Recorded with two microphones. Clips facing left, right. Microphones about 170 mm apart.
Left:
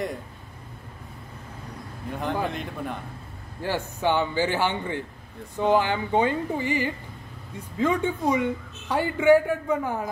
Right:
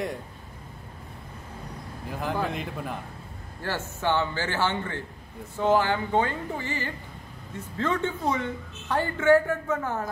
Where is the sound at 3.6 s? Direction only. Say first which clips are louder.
Left 3 dB; 15° left (ahead or behind).